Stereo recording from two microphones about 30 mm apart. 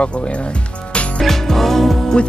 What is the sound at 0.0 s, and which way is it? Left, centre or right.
Speech, left.